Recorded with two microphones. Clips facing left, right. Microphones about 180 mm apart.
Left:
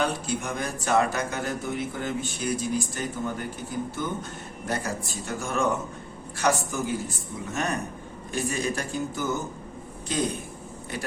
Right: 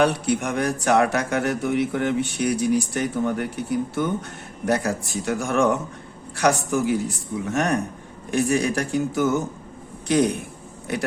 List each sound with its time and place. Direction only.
0.0 s speech: 70° right (ahead or behind)